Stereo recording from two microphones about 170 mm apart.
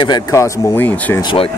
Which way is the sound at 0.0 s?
20° left (ahead or behind).